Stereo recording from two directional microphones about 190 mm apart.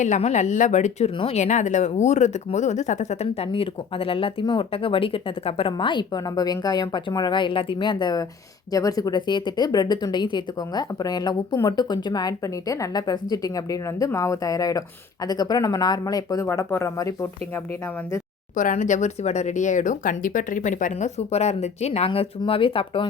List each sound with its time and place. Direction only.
0.0 s speech: 40° left (ahead or behind)
3.5 s speech: 30° left (ahead or behind)
18.5 s speech: 40° left (ahead or behind)